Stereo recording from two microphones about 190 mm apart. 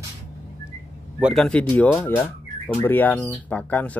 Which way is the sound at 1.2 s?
Centre (ahead or behind).